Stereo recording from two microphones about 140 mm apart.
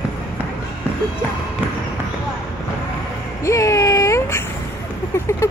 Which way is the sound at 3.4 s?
20° left (ahead or behind).